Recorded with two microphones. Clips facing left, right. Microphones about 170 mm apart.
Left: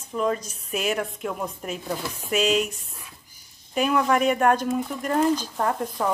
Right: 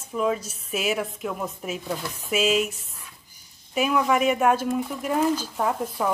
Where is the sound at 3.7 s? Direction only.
5° right (ahead or behind).